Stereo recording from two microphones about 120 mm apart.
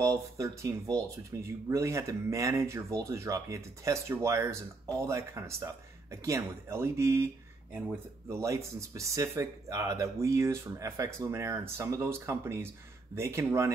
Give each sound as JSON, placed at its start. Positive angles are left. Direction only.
{"t": 0.0, "sound": "speech", "side_deg": -25}
{"t": 8.3, "sound": "speech", "side_deg": -25}